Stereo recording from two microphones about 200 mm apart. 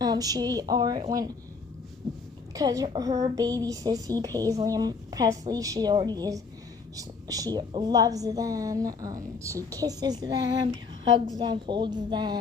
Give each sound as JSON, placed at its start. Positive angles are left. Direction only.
{"t": 0.0, "sound": "a woman's voice", "side_deg": -20}
{"t": 2.6, "sound": "a woman's voice", "side_deg": -20}